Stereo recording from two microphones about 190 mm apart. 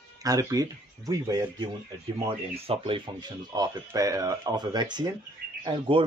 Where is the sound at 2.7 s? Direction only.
25° right (ahead or behind).